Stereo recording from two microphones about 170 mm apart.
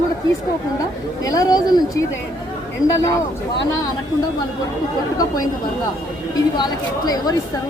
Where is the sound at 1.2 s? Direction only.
20° left (ahead or behind).